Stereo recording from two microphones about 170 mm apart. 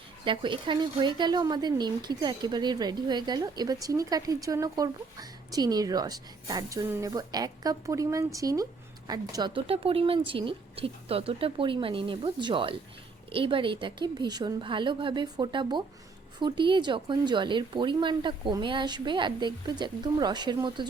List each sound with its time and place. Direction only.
0.3 s a woman's voice: 30° right (ahead or behind)